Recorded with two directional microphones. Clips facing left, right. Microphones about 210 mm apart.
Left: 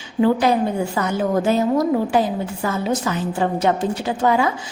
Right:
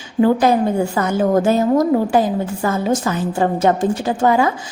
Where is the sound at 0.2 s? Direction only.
45° right (ahead or behind).